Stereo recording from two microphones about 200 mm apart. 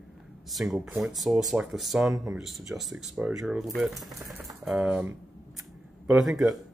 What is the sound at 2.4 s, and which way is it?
Speech, centre (ahead or behind).